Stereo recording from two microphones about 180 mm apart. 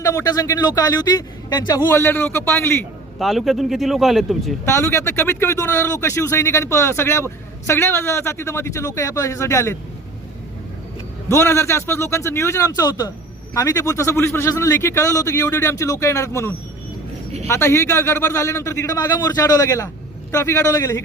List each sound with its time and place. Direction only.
0.0 s a man's voice: 15° left (ahead or behind)
3.2 s speech: centre (ahead or behind)
4.6 s a man's voice: 15° left (ahead or behind)
11.3 s a man's voice: 15° left (ahead or behind)